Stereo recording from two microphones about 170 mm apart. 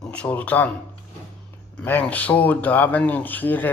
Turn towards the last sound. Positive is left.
turn(degrees=10)  # may be behind; listen again after turning